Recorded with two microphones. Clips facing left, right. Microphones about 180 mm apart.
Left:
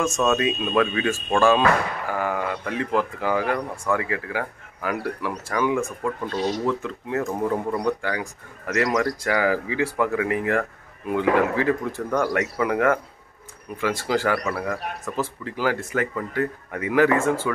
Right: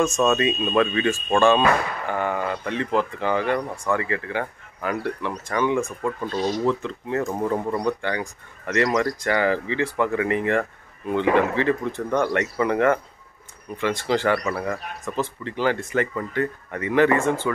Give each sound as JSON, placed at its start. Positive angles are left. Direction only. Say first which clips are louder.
{"t": 0.0, "sound": "speech", "louder": "right 2 dB", "side_deg": 0}